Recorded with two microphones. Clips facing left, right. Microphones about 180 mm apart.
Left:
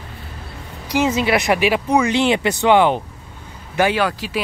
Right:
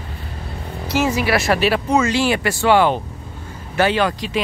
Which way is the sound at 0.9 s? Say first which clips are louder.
Left 1 dB; 20° left (ahead or behind).